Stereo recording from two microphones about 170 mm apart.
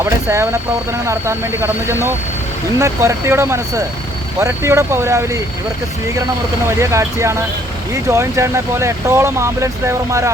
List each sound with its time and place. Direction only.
0.0 s speech: 15° right (ahead or behind)
6.7 s speech: 15° right (ahead or behind)